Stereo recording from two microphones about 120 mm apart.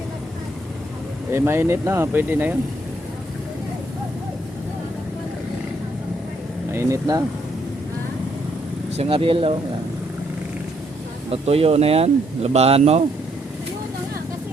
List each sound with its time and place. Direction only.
1.3 s speech: 20° right (ahead or behind)
6.7 s speech: 25° right (ahead or behind)
9.0 s speech: 50° right (ahead or behind)
11.3 s speech: 55° right (ahead or behind)